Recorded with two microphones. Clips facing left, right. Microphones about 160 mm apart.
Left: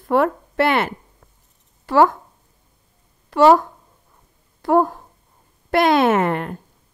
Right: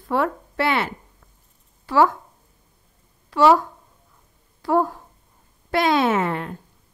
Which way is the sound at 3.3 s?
50° left (ahead or behind).